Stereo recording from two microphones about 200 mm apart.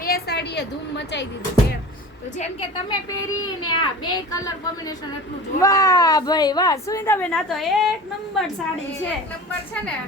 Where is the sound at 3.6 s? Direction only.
20° left (ahead or behind).